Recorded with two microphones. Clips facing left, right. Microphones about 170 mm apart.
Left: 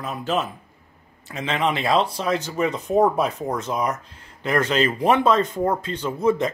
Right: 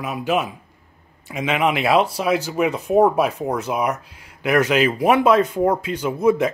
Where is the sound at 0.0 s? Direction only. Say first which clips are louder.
Right 3 dB; 10° right (ahead or behind).